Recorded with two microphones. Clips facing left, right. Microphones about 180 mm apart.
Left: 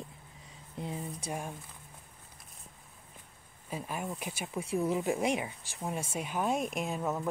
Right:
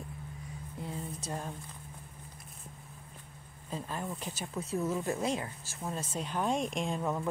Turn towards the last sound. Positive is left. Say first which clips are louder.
# even
turn(degrees=5)  # may be behind; listen again after turning